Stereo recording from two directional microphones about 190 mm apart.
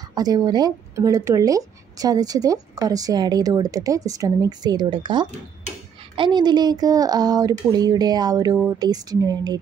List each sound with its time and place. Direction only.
0.1 s speech: 20° right (ahead or behind)